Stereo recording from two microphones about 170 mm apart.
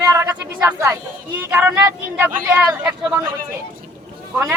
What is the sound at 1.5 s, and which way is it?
Speech, 15° right (ahead or behind).